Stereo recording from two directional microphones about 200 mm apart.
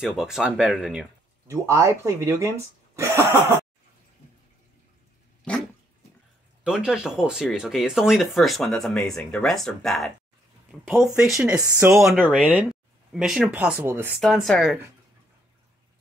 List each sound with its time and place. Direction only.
0.0 s speech: centre (ahead or behind)
1.5 s speech: 15° right (ahead or behind)
5.5 s dog: 5° left (ahead or behind)
6.6 s speech: 5° right (ahead or behind)
14.2 s speech: centre (ahead or behind)